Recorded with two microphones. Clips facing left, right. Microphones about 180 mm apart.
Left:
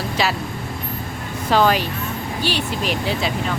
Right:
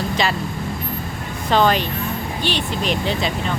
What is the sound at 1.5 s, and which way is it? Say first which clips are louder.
Speech: even; 5° left (ahead or behind).